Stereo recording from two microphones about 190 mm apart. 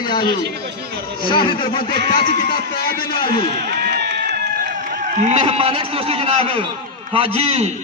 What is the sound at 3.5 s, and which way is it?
Run, 60° right (ahead or behind).